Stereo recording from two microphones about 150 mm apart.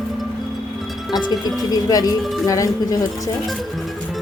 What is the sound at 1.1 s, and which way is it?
Speech, 30° left (ahead or behind).